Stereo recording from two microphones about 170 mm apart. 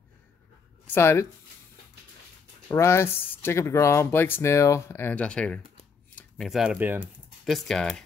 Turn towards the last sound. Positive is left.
turn(degrees=5)  # may be behind; listen again after turning